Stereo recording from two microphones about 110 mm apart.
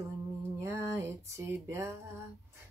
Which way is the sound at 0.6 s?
25° right (ahead or behind).